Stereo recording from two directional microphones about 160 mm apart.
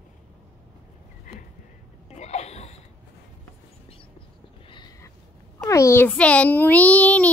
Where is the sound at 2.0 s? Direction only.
45° left (ahead or behind).